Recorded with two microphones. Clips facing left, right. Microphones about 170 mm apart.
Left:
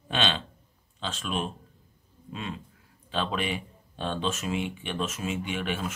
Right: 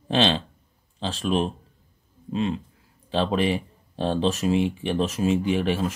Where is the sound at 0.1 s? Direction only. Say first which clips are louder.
Right 7 dB; 35° right (ahead or behind).